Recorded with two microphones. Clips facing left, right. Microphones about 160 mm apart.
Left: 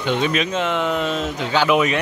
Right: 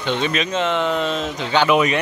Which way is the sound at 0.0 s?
5° left (ahead or behind).